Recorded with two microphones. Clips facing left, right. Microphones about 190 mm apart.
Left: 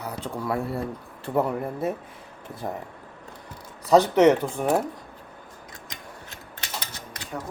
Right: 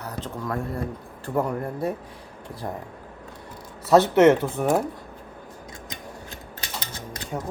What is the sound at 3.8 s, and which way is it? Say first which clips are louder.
Speech: right 1 dB; 5° right (ahead or behind).